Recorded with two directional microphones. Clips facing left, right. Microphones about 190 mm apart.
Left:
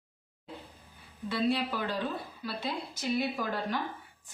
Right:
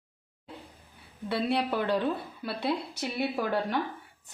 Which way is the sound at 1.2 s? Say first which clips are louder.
Right 1 dB; 60° right (ahead or behind).